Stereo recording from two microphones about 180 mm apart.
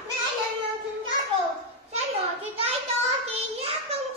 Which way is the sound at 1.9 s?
35° right (ahead or behind).